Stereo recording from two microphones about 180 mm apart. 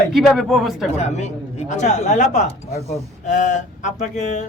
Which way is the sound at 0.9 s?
40° left (ahead or behind).